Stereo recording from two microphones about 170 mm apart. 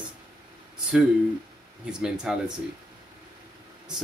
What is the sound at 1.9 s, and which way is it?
Speech, 5° right (ahead or behind).